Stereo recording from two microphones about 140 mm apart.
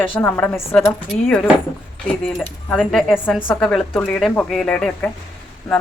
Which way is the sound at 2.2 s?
10° left (ahead or behind).